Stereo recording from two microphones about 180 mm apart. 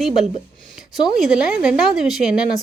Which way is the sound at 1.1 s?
Centre (ahead or behind).